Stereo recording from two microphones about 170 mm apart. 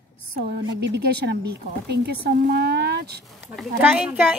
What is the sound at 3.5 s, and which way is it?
Speech, 5° right (ahead or behind).